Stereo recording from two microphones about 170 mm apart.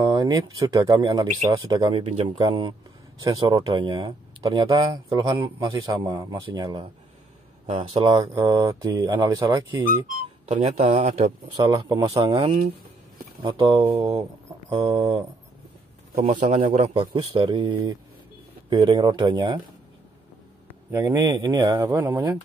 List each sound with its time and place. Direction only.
0.0 s speech: 25° right (ahead or behind)
7.9 s speech: 25° right (ahead or behind)
10.0 s speech: 40° right (ahead or behind)
16.2 s speech: 50° right (ahead or behind); by 19.6 s 25° right (ahead or behind)
20.9 s speech: 20° right (ahead or behind)